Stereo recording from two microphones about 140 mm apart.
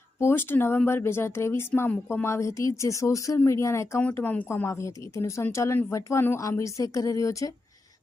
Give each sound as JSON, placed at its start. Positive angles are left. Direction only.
{"t": 0.2, "sound": "speech", "side_deg": 15}